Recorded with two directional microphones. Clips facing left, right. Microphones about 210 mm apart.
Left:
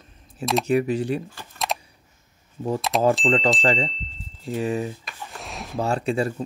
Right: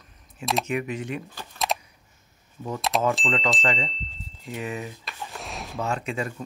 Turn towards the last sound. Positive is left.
turn(degrees=35)  # may be behind; listen again after turning